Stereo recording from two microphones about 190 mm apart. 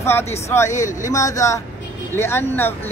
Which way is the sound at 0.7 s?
40° left (ahead or behind).